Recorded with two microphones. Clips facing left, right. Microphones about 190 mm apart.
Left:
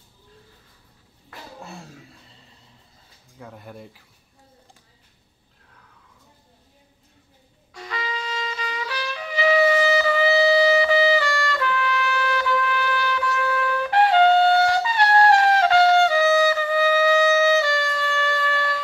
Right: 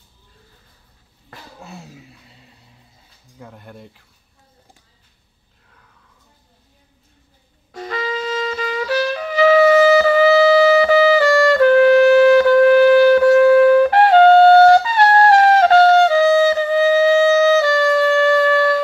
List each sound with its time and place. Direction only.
1.6 s a sound: centre (ahead or behind)
3.3 s speech: centre (ahead or behind)
7.7 s music: 40° right (ahead or behind)
17.6 s wind instrument: 50° right (ahead or behind)